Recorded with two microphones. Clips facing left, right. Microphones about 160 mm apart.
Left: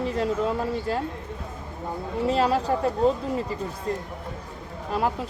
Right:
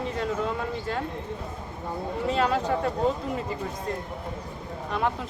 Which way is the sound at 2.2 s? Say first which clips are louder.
Left 3 dB; 35° left (ahead or behind).